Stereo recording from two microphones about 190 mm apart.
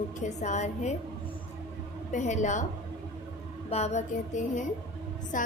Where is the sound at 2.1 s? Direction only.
40° left (ahead or behind).